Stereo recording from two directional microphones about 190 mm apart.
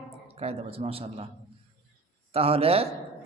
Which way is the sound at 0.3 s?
30° right (ahead or behind).